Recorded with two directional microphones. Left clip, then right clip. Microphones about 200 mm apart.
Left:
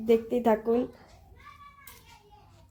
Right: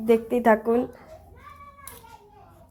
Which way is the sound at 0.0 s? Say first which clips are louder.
Right 4 dB; centre (ahead or behind).